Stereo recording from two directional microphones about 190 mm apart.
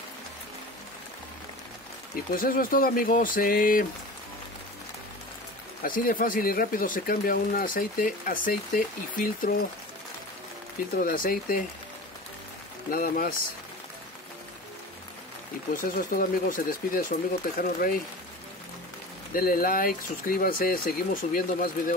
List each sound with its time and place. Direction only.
2.3 s speech: 50° left (ahead or behind)
5.8 s speech: 50° left (ahead or behind)
11.0 s speech: 50° left (ahead or behind)
12.9 s speech: 45° left (ahead or behind)
15.7 s speech: 45° left (ahead or behind)
19.3 s speech: 50° left (ahead or behind)